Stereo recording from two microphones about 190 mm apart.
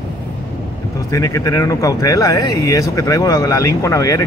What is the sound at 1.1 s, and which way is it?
Speech, 15° left (ahead or behind).